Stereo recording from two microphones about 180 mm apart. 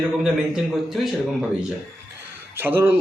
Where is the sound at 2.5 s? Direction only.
10° right (ahead or behind).